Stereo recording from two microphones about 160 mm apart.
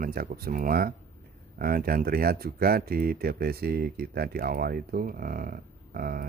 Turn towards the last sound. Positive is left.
turn(degrees=-65)  # may be behind; listen again after turning